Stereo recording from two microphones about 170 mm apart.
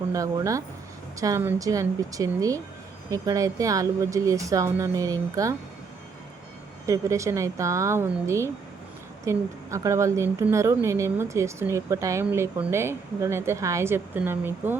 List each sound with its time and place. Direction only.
0.1 s speech: 20° right (ahead or behind)
6.8 s speech: 20° right (ahead or behind)